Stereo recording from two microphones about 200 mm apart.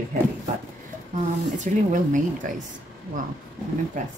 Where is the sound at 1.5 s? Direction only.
40° right (ahead or behind).